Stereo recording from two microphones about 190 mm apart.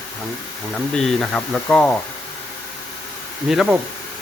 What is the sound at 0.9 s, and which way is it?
Speech, centre (ahead or behind).